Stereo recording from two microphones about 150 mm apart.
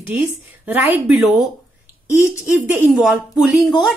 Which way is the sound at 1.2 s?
5° right (ahead or behind).